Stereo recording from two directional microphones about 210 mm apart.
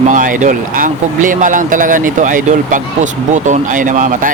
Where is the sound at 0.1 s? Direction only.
40° right (ahead or behind).